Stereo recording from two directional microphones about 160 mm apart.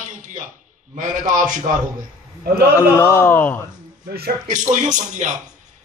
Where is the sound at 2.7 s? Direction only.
15° left (ahead or behind).